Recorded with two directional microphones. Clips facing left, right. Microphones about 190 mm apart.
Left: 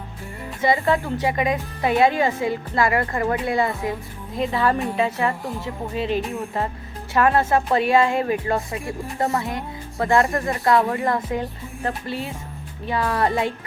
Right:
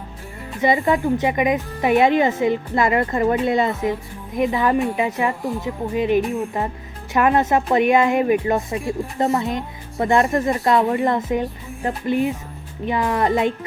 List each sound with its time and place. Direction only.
0.6 s speech: 20° right (ahead or behind)